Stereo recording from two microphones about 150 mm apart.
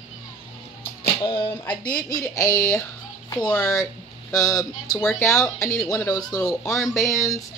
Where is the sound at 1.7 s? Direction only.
25° left (ahead or behind).